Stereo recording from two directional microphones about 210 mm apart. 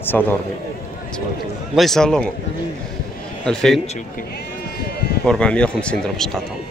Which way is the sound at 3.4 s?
Centre (ahead or behind).